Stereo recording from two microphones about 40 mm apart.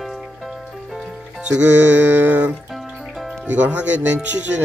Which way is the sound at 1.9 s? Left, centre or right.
Right.